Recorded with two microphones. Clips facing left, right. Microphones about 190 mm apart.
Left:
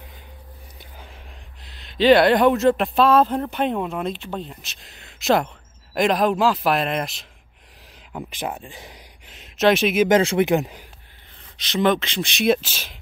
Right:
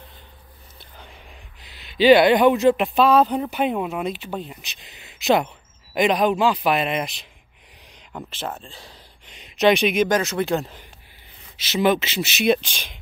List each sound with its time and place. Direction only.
1.6 s speech: centre (ahead or behind)
8.1 s speech: 15° left (ahead or behind)
9.3 s speech: centre (ahead or behind)
10.0 s speech: 25° left (ahead or behind)
11.5 s speech: 5° right (ahead or behind)